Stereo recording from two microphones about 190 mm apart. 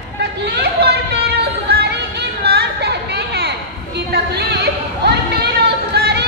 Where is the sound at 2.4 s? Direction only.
60° right (ahead or behind).